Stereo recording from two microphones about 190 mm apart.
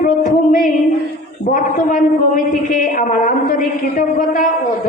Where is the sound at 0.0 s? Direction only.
45° left (ahead or behind).